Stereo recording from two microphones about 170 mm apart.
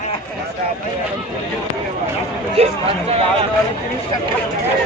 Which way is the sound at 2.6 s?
35° right (ahead or behind).